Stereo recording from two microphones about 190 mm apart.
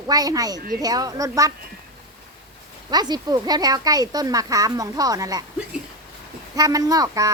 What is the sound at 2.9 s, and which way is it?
Speech, 20° right (ahead or behind).